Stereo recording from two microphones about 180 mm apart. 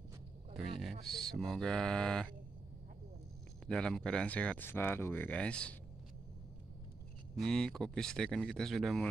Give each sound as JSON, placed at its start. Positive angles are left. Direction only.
{"t": 0.6, "sound": "a sound", "side_deg": 0}
{"t": 1.0, "sound": "speech", "side_deg": 0}
{"t": 3.6, "sound": "speech", "side_deg": 5}
{"t": 7.4, "sound": "speech", "side_deg": 5}